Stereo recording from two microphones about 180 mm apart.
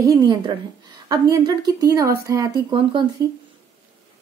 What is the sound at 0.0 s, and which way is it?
Speech, 20° right (ahead or behind).